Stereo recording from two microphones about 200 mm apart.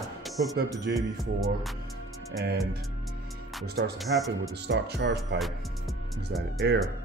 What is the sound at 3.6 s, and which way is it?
Speech, 50° right (ahead or behind).